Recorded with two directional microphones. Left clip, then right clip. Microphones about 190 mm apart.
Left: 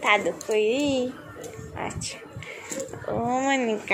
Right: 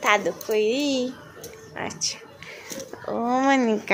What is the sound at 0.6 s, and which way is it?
Speech, 65° right (ahead or behind).